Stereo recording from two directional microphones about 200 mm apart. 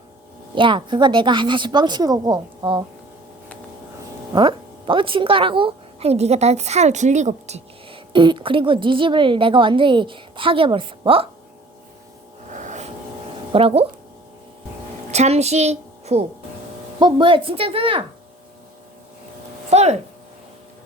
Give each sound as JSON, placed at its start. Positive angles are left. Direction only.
{"t": 0.5, "sound": "a woman's voice", "side_deg": -25}
{"t": 4.4, "sound": "a woman's voice", "side_deg": -25}
{"t": 12.5, "sound": "vehicle", "side_deg": -35}
{"t": 13.5, "sound": "a woman's voice", "side_deg": -30}
{"t": 15.1, "sound": "a woman's voice", "side_deg": -35}
{"t": 19.7, "sound": "speech", "side_deg": -35}